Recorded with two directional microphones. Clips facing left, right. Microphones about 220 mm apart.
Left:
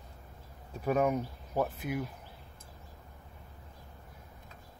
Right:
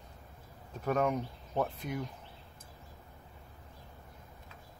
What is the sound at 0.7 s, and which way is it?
Speech, 10° left (ahead or behind).